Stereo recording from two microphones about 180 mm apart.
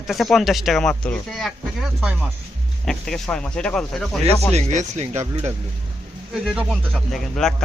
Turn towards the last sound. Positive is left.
turn(degrees=0)  # may be behind; listen again after turning